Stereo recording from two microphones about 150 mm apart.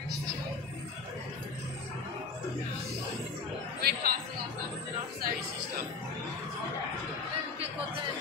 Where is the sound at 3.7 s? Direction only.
90° right.